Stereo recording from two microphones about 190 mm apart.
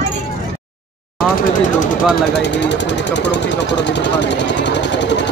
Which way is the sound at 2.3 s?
65° left (ahead or behind).